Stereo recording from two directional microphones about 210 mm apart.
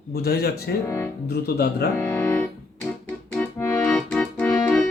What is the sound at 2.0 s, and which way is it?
Music, 10° left (ahead or behind).